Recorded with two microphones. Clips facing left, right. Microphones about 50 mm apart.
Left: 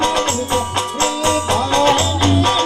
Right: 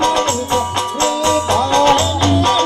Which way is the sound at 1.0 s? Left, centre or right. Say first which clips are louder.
Right 2 dB; centre.